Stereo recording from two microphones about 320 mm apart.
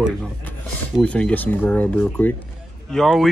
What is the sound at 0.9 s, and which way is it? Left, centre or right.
Speech, centre.